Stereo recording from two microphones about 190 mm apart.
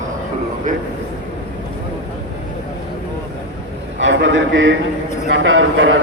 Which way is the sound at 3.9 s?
75° right (ahead or behind).